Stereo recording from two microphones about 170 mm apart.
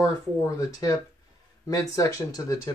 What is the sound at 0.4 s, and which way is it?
Speech, 20° left (ahead or behind).